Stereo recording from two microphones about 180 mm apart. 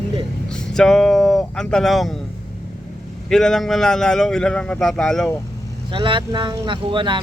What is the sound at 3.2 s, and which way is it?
A man's voice, centre (ahead or behind).